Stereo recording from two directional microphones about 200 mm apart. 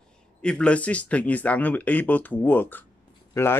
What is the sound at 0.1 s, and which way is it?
Speech, 5° left (ahead or behind).